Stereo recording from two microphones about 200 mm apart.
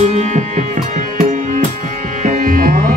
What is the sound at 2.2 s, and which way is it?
Music, 40° right (ahead or behind).